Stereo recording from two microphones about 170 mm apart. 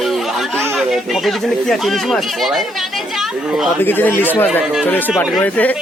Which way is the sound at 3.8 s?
10° left (ahead or behind).